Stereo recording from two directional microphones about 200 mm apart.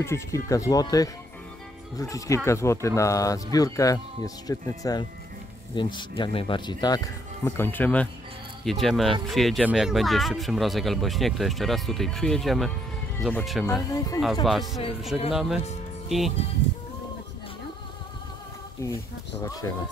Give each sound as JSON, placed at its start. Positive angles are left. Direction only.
{"t": 0.0, "sound": "speech", "side_deg": 15}
{"t": 13.9, "sound": "speech", "side_deg": 15}
{"t": 14.4, "sound": "speech", "side_deg": 0}
{"t": 18.8, "sound": "speech", "side_deg": 15}